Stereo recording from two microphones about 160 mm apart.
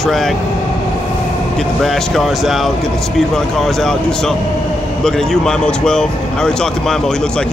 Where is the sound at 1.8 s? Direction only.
Centre (ahead or behind).